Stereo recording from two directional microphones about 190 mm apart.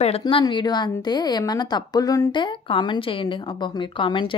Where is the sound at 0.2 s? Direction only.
25° left (ahead or behind).